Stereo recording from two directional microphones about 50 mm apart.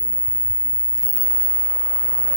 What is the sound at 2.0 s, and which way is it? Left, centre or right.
Vehicle, left.